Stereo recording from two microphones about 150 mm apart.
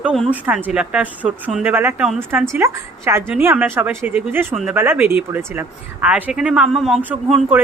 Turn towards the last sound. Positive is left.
turn(degrees=-10)  # may be behind; listen again after turning